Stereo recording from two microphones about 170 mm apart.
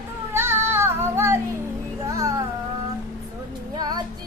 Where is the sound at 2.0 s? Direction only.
20° right (ahead or behind).